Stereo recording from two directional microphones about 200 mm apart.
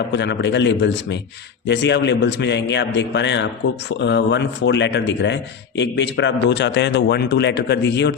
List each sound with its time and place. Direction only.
0.1 s speech: 60° left (ahead or behind)